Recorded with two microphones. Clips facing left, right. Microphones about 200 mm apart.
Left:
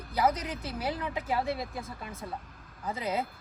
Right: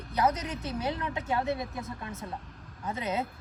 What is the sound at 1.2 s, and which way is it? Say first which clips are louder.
Speech: right 2 dB; 30° left (ahead or behind).